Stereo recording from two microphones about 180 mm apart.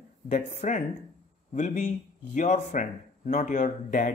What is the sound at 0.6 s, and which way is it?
Speech, 45° left (ahead or behind).